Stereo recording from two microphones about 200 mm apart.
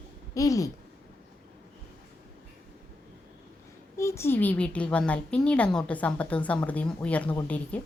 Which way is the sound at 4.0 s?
15° left (ahead or behind).